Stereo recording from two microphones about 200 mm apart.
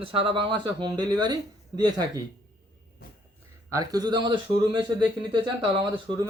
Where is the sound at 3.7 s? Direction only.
15° right (ahead or behind).